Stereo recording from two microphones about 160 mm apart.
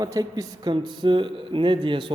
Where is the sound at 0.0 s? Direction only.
20° right (ahead or behind).